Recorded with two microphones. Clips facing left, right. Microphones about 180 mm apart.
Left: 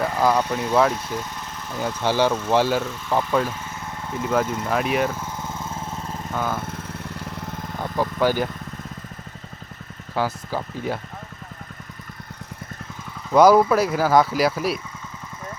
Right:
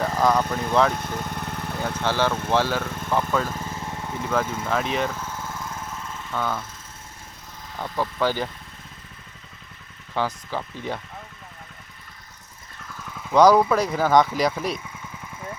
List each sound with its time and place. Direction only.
0.0 s speech: 5° left (ahead or behind)
1.0 s vehicle: 60° right (ahead or behind)
1.8 s speech: 10° left (ahead or behind)
4.6 s vehicle: 10° left (ahead or behind); by 6.3 s 35° left (ahead or behind)
6.3 s speech: 5° left (ahead or behind)
6.6 s lawn mower: 60° left (ahead or behind)
7.8 s speech: 15° left (ahead or behind)
10.2 s speech: 10° left (ahead or behind)
13.3 s speech: 10° left (ahead or behind)